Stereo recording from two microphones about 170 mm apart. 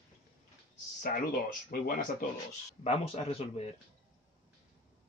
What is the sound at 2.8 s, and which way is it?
Speech, 35° left (ahead or behind).